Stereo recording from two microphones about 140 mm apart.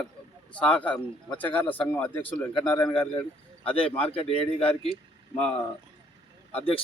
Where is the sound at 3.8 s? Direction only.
40° left (ahead or behind).